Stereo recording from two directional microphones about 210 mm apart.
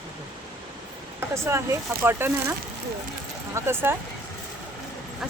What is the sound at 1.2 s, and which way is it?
Speech, 15° right (ahead or behind).